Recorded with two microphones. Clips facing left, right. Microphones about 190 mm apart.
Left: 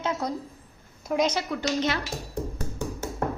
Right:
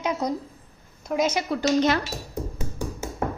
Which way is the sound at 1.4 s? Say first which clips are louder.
Right 5 dB; 40° right (ahead or behind).